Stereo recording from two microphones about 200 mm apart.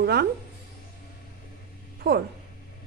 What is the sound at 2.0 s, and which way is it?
Speech, 55° right (ahead or behind).